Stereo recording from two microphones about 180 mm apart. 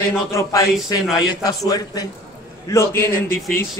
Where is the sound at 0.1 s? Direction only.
15° left (ahead or behind).